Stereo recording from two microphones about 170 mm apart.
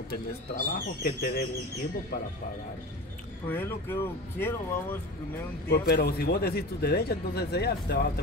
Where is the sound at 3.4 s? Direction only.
10° left (ahead or behind).